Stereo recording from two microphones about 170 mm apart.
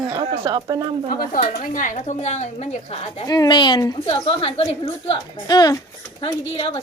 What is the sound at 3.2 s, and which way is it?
A woman's voice, 25° left (ahead or behind).